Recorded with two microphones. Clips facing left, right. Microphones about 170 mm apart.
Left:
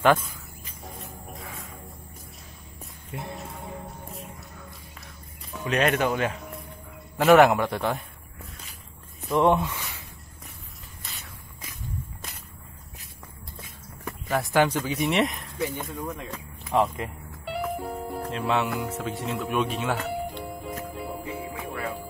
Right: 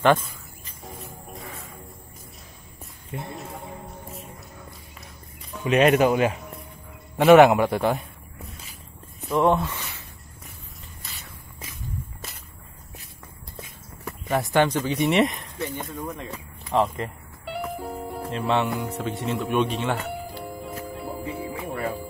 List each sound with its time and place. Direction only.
0.8 s music: centre (ahead or behind)
3.1 s music: centre (ahead or behind)
5.5 s a sound: 10° right (ahead or behind)
5.9 s a man's voice: 10° right (ahead or behind)
9.5 s speech: 10° left (ahead or behind)
11.8 s walk: centre (ahead or behind)
14.3 s a man's voice: centre (ahead or behind)
16.9 s music: centre (ahead or behind)
21.3 s music: 30° right (ahead or behind)